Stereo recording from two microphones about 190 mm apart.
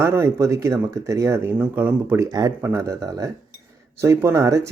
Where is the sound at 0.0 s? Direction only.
15° right (ahead or behind).